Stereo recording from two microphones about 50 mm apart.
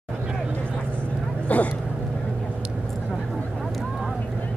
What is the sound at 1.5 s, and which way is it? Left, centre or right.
Speech, left.